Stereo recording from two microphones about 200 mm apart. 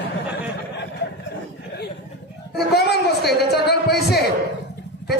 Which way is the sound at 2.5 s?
55° left (ahead or behind).